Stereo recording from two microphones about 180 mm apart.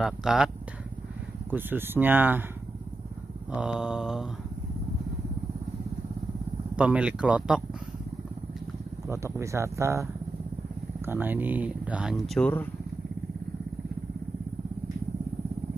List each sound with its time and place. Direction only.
0.0 s mantra: centre (ahead or behind)
1.5 s speech: 10° right (ahead or behind)
3.5 s mantra: 5° right (ahead or behind)
6.8 s speech: 5° right (ahead or behind)
9.0 s speech: 15° right (ahead or behind)
11.1 s speech: 10° right (ahead or behind)
12.4 s speech: 10° left (ahead or behind)